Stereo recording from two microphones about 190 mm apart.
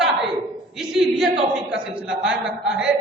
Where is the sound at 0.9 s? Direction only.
Centre (ahead or behind).